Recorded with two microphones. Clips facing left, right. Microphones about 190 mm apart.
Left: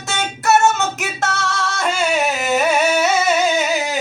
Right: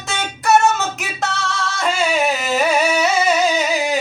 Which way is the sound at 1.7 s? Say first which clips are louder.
Right 1 dB; centre (ahead or behind).